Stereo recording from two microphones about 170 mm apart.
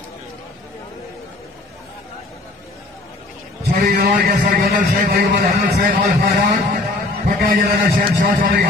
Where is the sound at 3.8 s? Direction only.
60° right (ahead or behind).